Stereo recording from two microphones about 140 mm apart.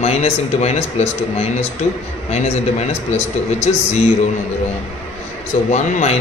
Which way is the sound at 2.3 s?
50° left (ahead or behind).